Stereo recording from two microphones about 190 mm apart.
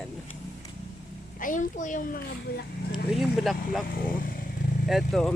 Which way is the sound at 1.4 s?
45° left (ahead or behind).